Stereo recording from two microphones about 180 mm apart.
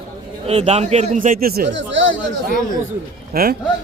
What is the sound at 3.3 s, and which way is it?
Speech, 55° right (ahead or behind).